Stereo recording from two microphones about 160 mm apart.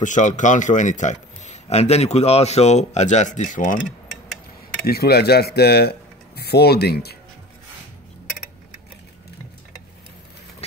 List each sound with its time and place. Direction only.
0.0 s a man's voice: 50° left (ahead or behind)
4.8 s speech: 75° left (ahead or behind)